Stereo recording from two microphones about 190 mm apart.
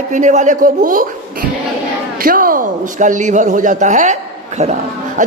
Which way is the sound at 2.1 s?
50° right (ahead or behind).